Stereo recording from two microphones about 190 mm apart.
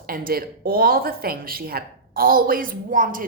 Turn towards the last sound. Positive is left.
turn(degrees=-45)  # may be behind; listen again after turning